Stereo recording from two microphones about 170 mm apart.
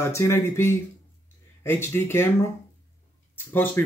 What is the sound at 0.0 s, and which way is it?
Speech, 15° left (ahead or behind).